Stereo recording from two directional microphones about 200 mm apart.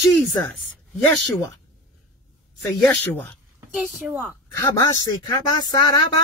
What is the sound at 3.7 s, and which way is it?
Speech, 5° right (ahead or behind).